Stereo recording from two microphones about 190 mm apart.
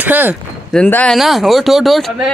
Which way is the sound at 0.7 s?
5° left (ahead or behind).